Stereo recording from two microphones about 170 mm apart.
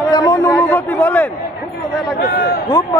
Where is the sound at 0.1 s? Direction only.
25° left (ahead or behind).